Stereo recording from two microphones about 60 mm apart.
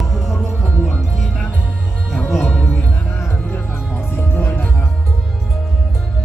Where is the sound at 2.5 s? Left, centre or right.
Left.